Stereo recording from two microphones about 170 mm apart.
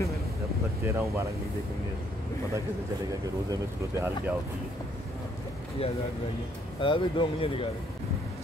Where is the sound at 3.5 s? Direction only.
15° right (ahead or behind).